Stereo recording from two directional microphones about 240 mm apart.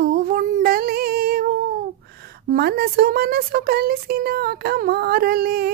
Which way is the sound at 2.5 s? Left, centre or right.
Right.